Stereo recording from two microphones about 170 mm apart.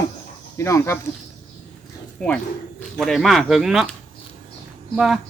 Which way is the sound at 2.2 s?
5° left (ahead or behind).